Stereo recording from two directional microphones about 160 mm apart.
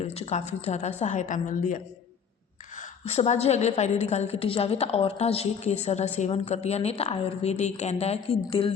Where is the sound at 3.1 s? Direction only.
40° left (ahead or behind).